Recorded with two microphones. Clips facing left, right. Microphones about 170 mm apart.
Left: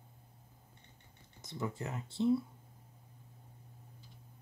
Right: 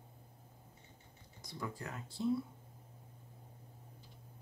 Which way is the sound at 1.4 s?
25° left (ahead or behind).